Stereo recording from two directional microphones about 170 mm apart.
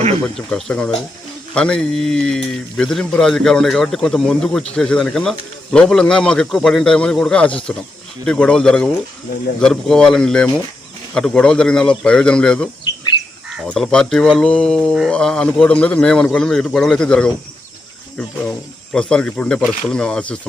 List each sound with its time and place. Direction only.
0.3 s a man's voice: 5° left (ahead or behind)
13.7 s a man's voice: 5° left (ahead or behind)
18.9 s a man's voice: 5° left (ahead or behind)